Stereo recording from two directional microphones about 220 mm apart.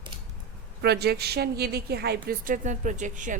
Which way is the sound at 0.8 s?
50° right (ahead or behind).